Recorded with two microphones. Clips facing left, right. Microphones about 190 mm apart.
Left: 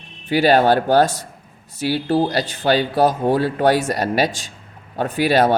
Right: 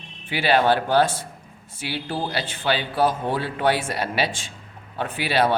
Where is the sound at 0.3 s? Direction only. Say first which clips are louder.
Left 5 dB; 40° left (ahead or behind).